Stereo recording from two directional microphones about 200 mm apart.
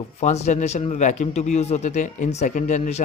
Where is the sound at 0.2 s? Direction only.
35° left (ahead or behind).